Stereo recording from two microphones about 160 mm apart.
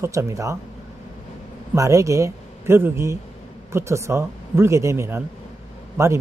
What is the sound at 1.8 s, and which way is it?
A man's voice, 20° right (ahead or behind).